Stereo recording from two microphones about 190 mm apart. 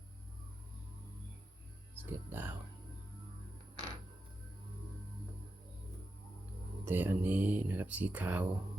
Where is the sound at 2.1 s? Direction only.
10° right (ahead or behind).